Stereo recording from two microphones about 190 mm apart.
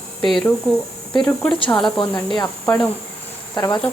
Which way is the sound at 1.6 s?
25° left (ahead or behind).